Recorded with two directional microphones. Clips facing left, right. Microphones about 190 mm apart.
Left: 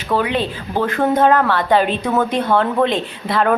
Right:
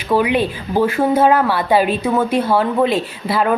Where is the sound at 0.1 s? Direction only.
10° right (ahead or behind).